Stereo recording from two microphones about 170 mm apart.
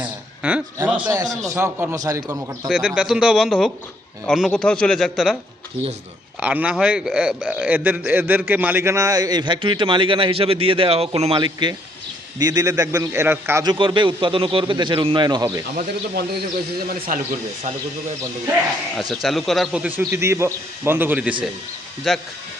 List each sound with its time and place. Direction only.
0.0 s a sound: 5° right (ahead or behind)
1.1 s a man's voice: 20° right (ahead or behind)
2.6 s a man's voice: 5° right (ahead or behind)
6.4 s a man's voice: 10° right (ahead or behind)
13.7 s a man's voice: 30° right (ahead or behind)
16.7 s speech: 60° right (ahead or behind)
18.9 s a man's voice: centre (ahead or behind)